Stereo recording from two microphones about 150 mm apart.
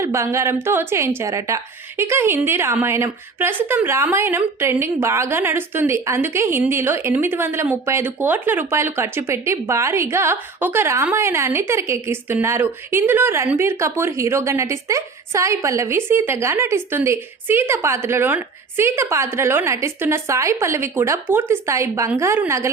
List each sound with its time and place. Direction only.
0.0 s a woman's voice: 20° right (ahead or behind)